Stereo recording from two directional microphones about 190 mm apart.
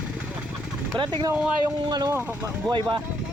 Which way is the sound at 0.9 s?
25° right (ahead or behind).